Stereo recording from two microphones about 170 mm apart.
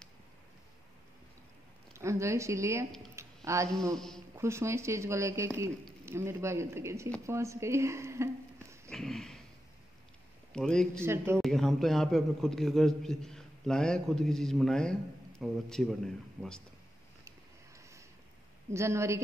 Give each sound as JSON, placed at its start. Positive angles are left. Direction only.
{"t": 2.0, "sound": "speech", "side_deg": -15}
{"t": 3.2, "sound": "a sound", "side_deg": -20}
{"t": 3.9, "sound": "a man's voice", "side_deg": 5}
{"t": 4.4, "sound": "speech", "side_deg": -15}
{"t": 8.9, "sound": "a sound", "side_deg": 0}
{"t": 10.5, "sound": "a man's voice", "side_deg": 5}
{"t": 11.0, "sound": "speech", "side_deg": -15}
{"t": 11.4, "sound": "a man's voice", "side_deg": 0}
{"t": 17.7, "sound": "a sound", "side_deg": -15}
{"t": 18.7, "sound": "speech", "side_deg": -15}